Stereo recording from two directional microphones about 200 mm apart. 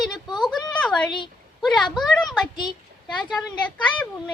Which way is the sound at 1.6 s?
Centre (ahead or behind).